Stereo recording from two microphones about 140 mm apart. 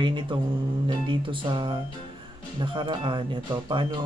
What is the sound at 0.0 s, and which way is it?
Speech, 35° right (ahead or behind).